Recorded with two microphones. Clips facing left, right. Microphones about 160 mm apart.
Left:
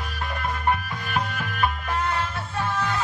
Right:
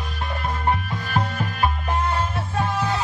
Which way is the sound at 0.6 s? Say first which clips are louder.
Right 1 dB; 35° right (ahead or behind).